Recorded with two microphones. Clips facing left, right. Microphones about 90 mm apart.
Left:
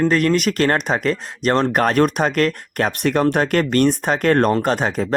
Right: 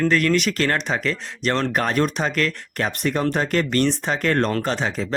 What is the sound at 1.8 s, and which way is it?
Speech, 55° left (ahead or behind).